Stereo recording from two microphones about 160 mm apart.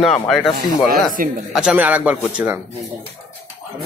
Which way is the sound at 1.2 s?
60° right (ahead or behind).